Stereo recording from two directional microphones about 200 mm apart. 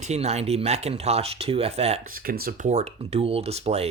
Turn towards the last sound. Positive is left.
turn(degrees=-30)  # may be behind; listen again after turning